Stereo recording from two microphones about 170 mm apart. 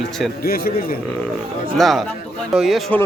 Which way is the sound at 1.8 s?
Centre (ahead or behind).